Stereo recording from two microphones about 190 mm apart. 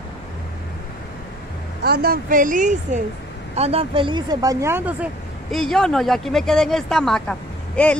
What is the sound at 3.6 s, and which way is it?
Speech, 30° right (ahead or behind).